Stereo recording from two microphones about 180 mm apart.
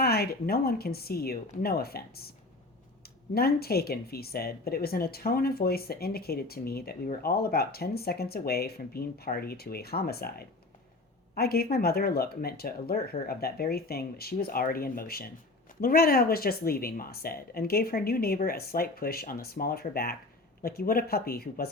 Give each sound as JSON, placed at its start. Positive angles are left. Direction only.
{"t": 0.0, "sound": "speech", "side_deg": 60}
{"t": 3.3, "sound": "speech", "side_deg": 60}